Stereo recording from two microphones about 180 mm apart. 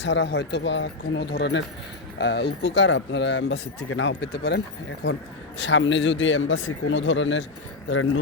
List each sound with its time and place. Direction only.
0.0 s speech: 80° left
5.6 s speech: 90° left